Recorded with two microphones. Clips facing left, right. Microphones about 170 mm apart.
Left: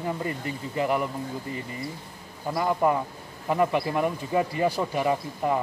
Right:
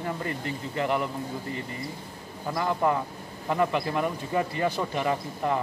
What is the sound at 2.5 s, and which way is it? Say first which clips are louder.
Speech: left 2 dB; 10° left (ahead or behind).